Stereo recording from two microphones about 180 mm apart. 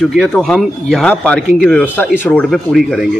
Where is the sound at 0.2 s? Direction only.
5° left (ahead or behind).